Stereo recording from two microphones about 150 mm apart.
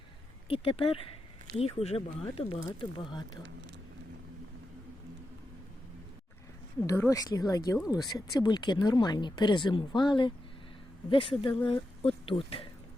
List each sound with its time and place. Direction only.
0.4 s a woman's voice: 40° left (ahead or behind)
6.8 s a woman's voice: 20° left (ahead or behind); by 12.6 s 35° left (ahead or behind)